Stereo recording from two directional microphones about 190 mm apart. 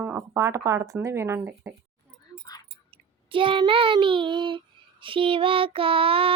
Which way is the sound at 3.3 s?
25° right (ahead or behind).